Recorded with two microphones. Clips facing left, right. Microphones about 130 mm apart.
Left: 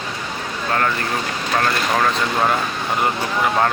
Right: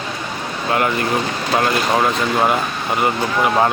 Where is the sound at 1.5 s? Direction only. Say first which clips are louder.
Right 3 dB; 20° right (ahead or behind).